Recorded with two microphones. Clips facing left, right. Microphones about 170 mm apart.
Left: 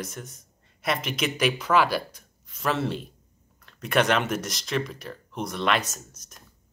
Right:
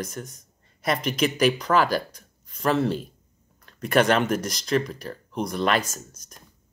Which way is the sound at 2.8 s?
Centre (ahead or behind).